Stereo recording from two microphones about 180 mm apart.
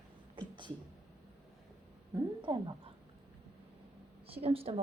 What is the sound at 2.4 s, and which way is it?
Speech, 25° right (ahead or behind).